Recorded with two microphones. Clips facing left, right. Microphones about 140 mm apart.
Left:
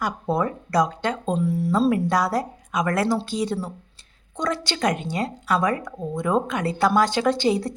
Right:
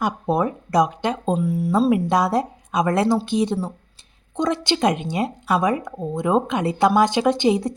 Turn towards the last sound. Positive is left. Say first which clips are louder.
# right 3 dB
turn(degrees=-20)  # may be behind; listen again after turning